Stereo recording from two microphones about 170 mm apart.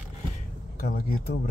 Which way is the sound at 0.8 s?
60° left (ahead or behind).